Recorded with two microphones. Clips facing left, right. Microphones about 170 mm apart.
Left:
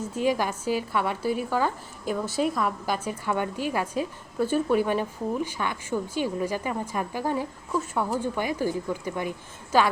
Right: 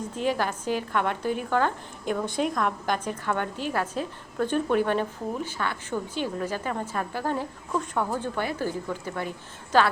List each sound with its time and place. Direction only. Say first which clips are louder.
0.0 s a woman's voice: left 2 dB; 10° left (ahead or behind)